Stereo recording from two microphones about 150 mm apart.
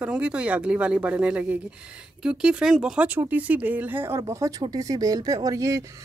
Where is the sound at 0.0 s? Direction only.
5° right (ahead or behind).